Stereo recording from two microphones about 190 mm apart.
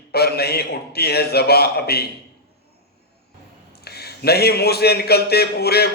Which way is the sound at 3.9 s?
55° left (ahead or behind).